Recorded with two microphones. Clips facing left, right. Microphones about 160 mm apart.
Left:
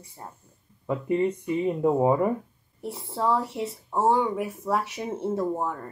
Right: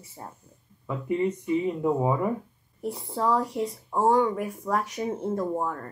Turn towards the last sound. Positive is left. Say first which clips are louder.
# left 1 dB
turn(degrees=5)  # may be behind; listen again after turning